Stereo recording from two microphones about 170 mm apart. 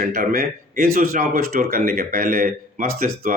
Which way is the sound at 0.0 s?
55° right (ahead or behind).